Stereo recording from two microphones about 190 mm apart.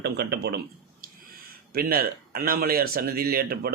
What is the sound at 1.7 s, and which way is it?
Speech, 50° right (ahead or behind).